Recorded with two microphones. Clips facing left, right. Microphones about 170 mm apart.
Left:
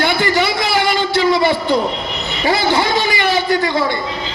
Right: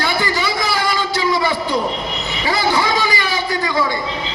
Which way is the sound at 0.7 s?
65° left (ahead or behind).